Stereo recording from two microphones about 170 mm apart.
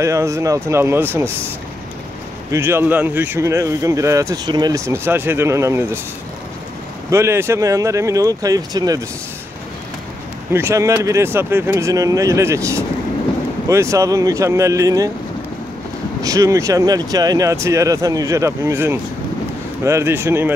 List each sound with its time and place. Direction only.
0.0 s speech: 15° right (ahead or behind)
2.5 s speech: 15° right (ahead or behind)
7.1 s speech: 15° right (ahead or behind)
10.5 s speech: 15° right (ahead or behind)
16.2 s speech: 20° right (ahead or behind)